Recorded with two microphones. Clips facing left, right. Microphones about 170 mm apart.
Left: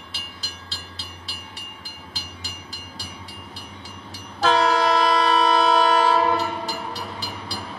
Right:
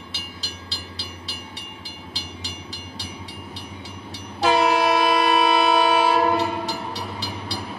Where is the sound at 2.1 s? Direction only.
50° left (ahead or behind).